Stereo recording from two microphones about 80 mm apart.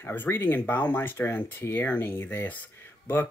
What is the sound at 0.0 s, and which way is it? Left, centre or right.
Speech, left.